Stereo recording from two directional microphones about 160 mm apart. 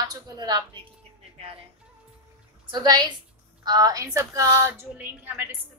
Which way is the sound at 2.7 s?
25° right (ahead or behind).